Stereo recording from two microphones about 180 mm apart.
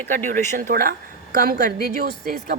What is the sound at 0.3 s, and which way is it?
A woman's voice, 55° right (ahead or behind).